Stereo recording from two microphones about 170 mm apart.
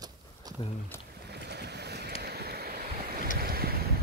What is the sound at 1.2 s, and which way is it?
Boat, 75° right (ahead or behind).